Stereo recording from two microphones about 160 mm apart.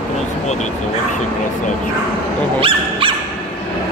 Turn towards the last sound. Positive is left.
turn(degrees=-30)  # may be behind; listen again after turning